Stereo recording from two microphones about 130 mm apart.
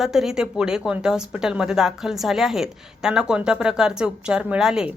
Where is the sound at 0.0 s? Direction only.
5° right (ahead or behind).